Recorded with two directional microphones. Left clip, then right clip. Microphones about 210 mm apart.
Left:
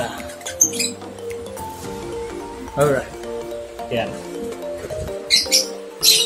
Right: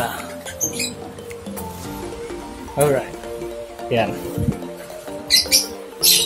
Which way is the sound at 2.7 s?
5° right (ahead or behind).